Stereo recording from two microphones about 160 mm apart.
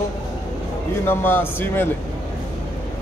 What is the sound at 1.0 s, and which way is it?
Speech, 15° left (ahead or behind).